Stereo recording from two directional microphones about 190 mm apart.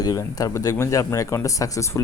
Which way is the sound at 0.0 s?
20° left (ahead or behind).